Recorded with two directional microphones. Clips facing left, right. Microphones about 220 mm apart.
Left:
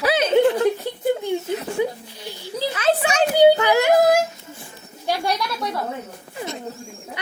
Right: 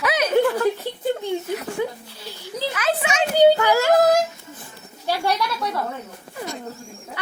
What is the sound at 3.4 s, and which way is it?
Yodeling, 15° left (ahead or behind).